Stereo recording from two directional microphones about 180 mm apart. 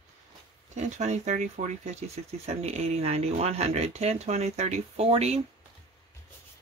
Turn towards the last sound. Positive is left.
turn(degrees=-35)  # may be behind; listen again after turning